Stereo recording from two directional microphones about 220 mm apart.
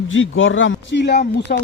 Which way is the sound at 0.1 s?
60° left (ahead or behind).